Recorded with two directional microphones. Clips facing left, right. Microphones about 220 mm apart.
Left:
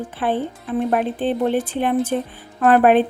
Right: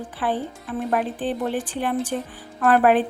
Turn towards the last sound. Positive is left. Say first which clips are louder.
# left 4 dB
turn(degrees=25)  # may be behind; listen again after turning